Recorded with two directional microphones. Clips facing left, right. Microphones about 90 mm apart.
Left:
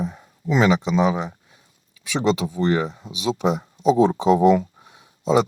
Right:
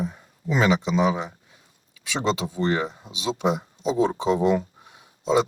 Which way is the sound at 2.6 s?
15° right (ahead or behind).